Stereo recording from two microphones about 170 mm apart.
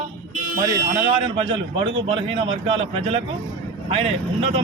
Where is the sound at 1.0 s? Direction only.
30° right (ahead or behind).